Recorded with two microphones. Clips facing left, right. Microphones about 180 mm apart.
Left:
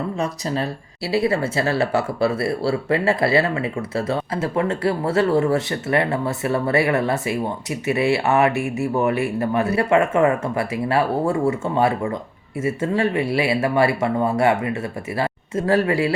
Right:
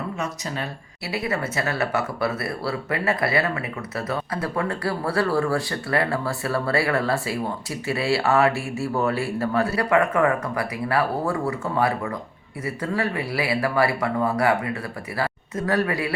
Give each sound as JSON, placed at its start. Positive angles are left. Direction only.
{"t": 0.2, "sound": "speech", "side_deg": 35}